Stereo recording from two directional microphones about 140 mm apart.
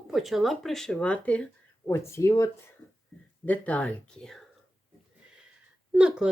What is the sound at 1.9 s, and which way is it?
Speech, 20° left (ahead or behind).